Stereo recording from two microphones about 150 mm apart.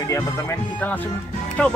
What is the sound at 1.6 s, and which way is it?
Speech, 5° left (ahead or behind).